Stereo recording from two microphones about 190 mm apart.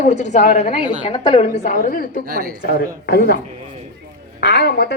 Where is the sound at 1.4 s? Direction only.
45° left (ahead or behind).